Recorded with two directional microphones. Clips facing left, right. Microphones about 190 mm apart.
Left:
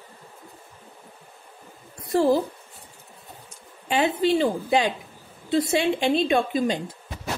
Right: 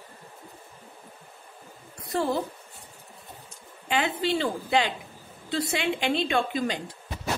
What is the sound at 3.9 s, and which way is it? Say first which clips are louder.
A woman's voice: left 5 dB; 20° left (ahead or behind).